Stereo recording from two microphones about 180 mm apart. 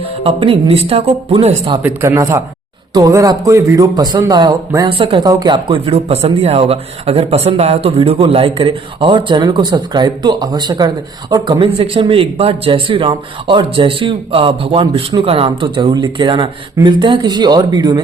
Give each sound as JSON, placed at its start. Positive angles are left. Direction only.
{"t": 0.3, "sound": "speech", "side_deg": -30}
{"t": 1.8, "sound": "speech", "side_deg": -15}